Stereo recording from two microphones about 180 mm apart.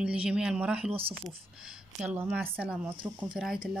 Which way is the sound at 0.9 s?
30° right (ahead or behind).